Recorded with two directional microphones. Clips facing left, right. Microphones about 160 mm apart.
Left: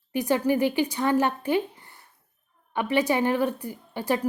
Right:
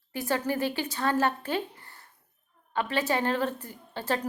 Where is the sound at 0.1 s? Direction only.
15° left (ahead or behind).